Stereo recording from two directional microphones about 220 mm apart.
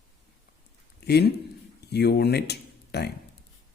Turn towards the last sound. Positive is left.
turn(degrees=50)  # may be behind; listen again after turning